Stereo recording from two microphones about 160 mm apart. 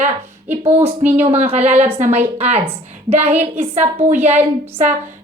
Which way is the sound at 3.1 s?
10° right (ahead or behind).